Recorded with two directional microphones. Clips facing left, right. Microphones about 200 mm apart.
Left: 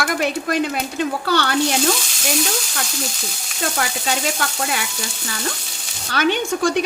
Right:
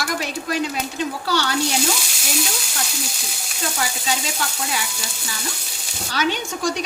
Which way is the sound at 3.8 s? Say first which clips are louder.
Left 2 dB; 55° left (ahead or behind).